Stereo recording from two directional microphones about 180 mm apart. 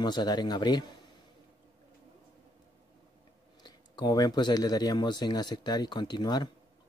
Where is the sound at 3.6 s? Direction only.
25° left (ahead or behind).